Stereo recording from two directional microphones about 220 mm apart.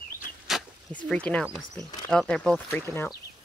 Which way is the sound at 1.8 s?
10° left (ahead or behind).